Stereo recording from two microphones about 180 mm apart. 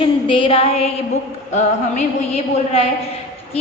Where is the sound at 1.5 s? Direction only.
40° left (ahead or behind).